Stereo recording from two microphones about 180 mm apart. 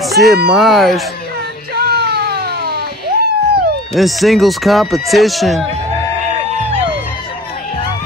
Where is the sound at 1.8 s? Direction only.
60° right (ahead or behind).